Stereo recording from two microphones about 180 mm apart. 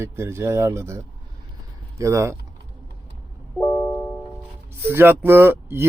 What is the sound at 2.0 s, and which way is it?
Speech, 15° right (ahead or behind).